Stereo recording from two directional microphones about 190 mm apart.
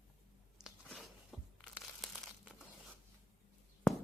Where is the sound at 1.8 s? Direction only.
5° left (ahead or behind).